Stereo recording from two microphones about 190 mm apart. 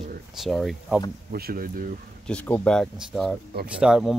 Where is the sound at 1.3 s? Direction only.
50° right (ahead or behind).